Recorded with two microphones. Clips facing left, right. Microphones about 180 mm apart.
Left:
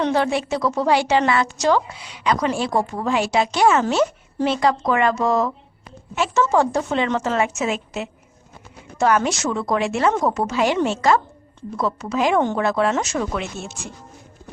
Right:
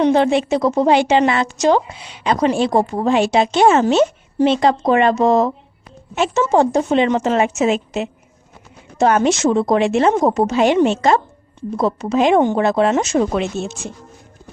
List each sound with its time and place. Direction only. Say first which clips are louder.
0.0 s a woman's voice: right 6 dB; 20° right (ahead or behind)